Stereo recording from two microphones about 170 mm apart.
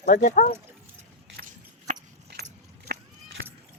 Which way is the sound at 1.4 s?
50° right (ahead or behind).